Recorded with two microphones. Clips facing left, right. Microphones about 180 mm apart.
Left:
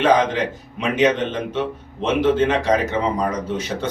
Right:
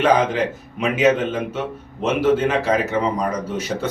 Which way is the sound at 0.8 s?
5° right (ahead or behind).